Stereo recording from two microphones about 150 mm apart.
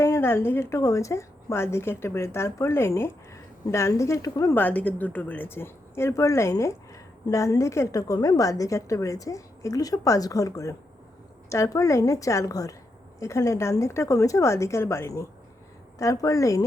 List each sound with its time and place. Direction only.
0.0 s a woman's voice: 15° left (ahead or behind)